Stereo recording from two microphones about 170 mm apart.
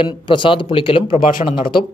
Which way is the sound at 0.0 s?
30° left (ahead or behind).